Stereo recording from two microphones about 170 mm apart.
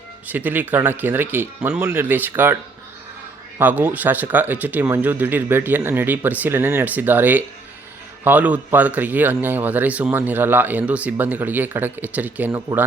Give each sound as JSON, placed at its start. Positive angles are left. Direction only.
{"t": 0.3, "sound": "speech", "side_deg": -10}
{"t": 3.6, "sound": "speech", "side_deg": -10}